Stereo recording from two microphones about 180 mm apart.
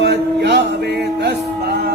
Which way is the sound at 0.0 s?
70° right (ahead or behind).